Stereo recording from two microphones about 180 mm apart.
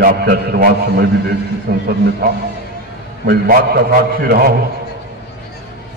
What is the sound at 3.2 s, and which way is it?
A man's voice, 60° right (ahead or behind).